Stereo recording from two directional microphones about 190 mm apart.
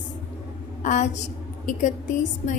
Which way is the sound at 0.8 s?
40° left (ahead or behind).